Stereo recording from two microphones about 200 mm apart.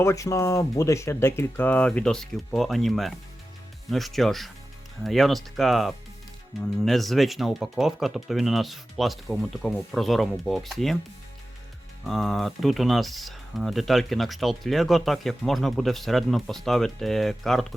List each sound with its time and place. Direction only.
0.0 s speech: 15° left (ahead or behind)
12.0 s speech: centre (ahead or behind)